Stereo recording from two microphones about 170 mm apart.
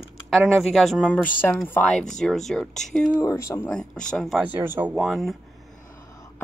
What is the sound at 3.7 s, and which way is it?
Speech, 5° left (ahead or behind).